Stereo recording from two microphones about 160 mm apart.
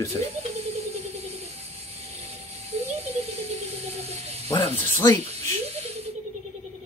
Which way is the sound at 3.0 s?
40° right (ahead or behind).